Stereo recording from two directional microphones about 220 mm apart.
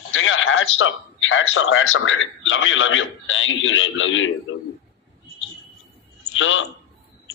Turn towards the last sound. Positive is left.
turn(degrees=60)  # may be behind; listen again after turning